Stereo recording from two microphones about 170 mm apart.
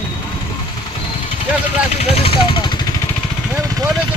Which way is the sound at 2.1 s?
35° left (ahead or behind).